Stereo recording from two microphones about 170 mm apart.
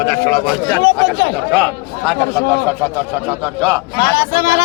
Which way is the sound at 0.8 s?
90° left.